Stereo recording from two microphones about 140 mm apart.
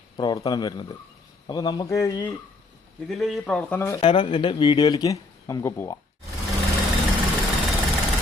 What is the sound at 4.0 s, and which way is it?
Speech, 35° left (ahead or behind).